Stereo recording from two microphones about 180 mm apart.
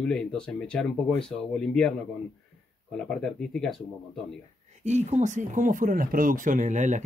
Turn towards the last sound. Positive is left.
turn(degrees=-45)  # may be behind; listen again after turning